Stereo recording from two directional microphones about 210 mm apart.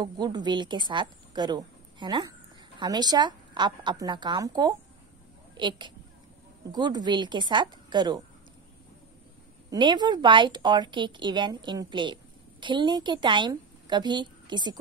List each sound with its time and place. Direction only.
0.0 s speech: 20° right (ahead or behind)
9.7 s speech: 20° right (ahead or behind)